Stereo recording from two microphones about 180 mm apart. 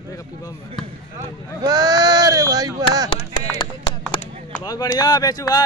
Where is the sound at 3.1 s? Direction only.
25° left (ahead or behind).